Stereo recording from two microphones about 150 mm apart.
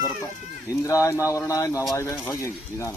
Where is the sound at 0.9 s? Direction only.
20° left (ahead or behind).